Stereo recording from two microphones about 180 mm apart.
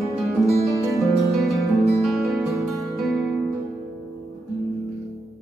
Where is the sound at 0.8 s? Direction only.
20° right (ahead or behind).